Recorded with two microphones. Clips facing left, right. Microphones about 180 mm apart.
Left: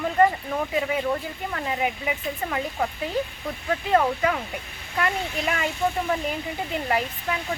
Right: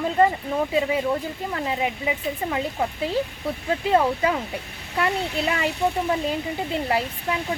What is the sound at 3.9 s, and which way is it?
Speech, 25° right (ahead or behind).